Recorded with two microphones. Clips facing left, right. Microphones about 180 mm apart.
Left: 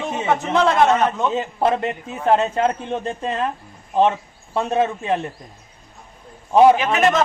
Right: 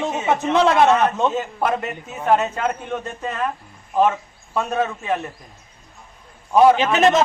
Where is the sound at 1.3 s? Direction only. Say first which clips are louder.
Left 2 dB; 30° left (ahead or behind).